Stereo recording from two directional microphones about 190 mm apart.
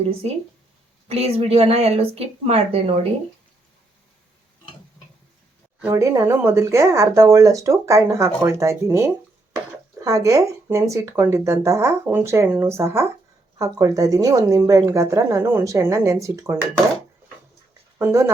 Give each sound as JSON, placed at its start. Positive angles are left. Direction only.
{"t": 1.0, "sound": "a woman's voice", "side_deg": -30}
{"t": 5.8, "sound": "speech", "side_deg": -15}
{"t": 18.0, "sound": "speech", "side_deg": -15}